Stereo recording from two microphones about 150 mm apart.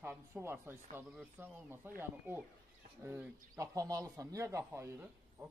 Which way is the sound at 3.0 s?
15° right (ahead or behind).